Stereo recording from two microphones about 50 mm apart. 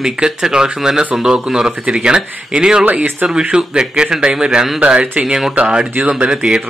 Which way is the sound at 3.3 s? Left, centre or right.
Centre.